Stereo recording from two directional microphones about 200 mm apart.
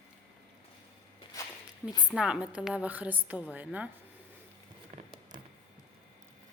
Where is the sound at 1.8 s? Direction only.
20° left (ahead or behind).